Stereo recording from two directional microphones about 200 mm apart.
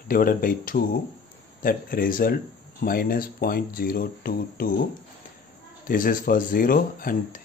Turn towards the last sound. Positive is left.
turn(degrees=45)  # may be behind; listen again after turning